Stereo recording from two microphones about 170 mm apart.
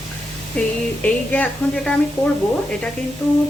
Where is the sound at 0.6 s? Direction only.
5° left (ahead or behind).